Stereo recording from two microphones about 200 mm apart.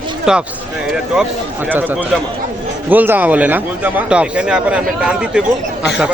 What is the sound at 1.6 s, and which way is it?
Speech, 10° right (ahead or behind).